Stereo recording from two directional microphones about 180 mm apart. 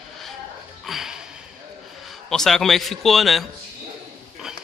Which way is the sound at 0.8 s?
Centre (ahead or behind).